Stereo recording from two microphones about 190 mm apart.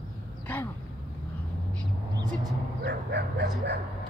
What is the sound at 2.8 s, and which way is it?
Bow-wow, 60° right (ahead or behind).